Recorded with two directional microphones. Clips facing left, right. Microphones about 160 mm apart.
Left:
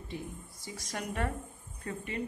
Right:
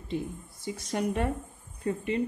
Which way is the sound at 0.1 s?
20° right (ahead or behind).